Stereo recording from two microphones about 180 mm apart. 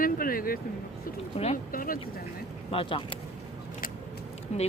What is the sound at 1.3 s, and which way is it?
Speech, 35° left (ahead or behind).